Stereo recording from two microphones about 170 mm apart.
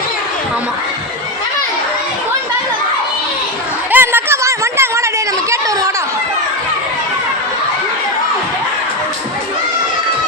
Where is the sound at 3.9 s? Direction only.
10° right (ahead or behind).